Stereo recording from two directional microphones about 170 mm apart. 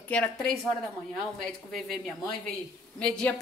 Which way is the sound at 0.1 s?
5° left (ahead or behind).